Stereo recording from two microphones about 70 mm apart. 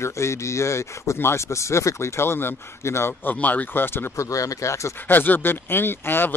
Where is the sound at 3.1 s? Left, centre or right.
Left.